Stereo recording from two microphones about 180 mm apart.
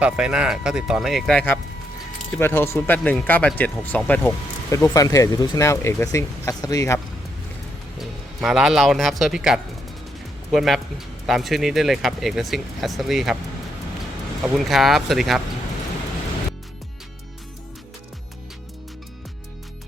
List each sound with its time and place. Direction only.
0.0 s speech: 5° right (ahead or behind)
4.7 s speech: 20° left (ahead or behind)
8.4 s speech: 5° right (ahead or behind)
14.4 s speech: centre (ahead or behind)